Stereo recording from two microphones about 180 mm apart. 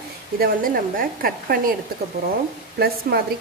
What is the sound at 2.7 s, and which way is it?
Speech, 60° right (ahead or behind).